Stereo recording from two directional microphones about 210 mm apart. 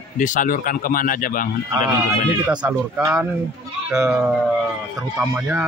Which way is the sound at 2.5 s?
5° right (ahead or behind).